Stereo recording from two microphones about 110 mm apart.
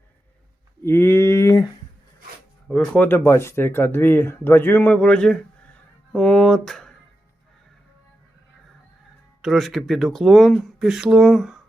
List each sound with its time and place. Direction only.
0.8 s a sound: 25° left (ahead or behind)
2.6 s speech: 10° left (ahead or behind)
9.4 s speech: centre (ahead or behind)